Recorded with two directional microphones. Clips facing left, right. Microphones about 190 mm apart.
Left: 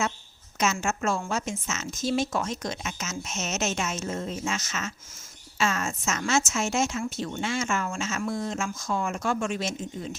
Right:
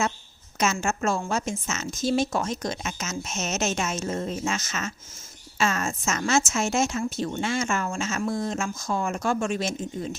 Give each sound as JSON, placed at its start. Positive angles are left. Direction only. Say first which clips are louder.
{"t": 0.6, "sound": "a woman's voice", "louder": "right 2 dB", "side_deg": -35}